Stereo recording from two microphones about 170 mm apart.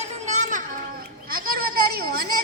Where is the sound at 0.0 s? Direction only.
45° right (ahead or behind).